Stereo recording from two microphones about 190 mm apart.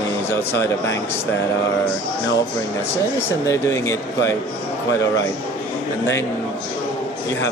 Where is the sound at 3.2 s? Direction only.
15° left (ahead or behind).